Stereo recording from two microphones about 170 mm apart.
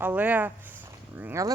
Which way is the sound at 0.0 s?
10° right (ahead or behind).